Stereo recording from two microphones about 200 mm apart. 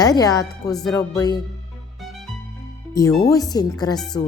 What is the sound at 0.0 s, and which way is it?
Speech, 20° left (ahead or behind).